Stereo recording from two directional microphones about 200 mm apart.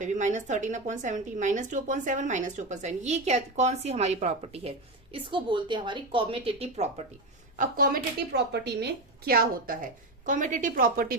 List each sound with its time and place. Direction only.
0.0 s a woman's voice: 35° right (ahead or behind)
7.6 s speech: 45° right (ahead or behind)